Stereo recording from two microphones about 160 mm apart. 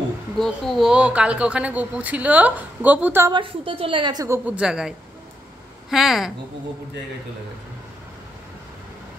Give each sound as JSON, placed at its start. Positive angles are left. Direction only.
{"t": 0.4, "sound": "speech", "side_deg": 0}
{"t": 3.3, "sound": "a woman's voice", "side_deg": -30}
{"t": 4.5, "sound": "a woman's voice", "side_deg": -5}